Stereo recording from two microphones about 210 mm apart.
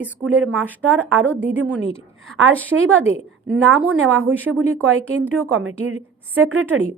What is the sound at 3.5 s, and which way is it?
Speech, 5° right (ahead or behind).